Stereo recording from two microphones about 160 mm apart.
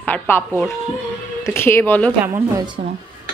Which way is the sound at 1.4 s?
15° left (ahead or behind).